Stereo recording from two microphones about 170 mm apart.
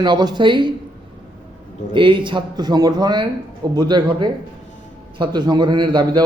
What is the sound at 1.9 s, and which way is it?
A man's voice, 30° right (ahead or behind).